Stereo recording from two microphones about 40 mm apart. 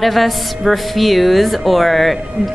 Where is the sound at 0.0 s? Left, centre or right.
Centre.